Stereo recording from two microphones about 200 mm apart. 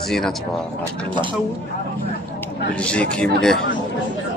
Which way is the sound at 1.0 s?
25° right (ahead or behind).